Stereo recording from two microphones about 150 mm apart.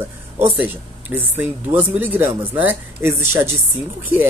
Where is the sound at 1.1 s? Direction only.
15° right (ahead or behind).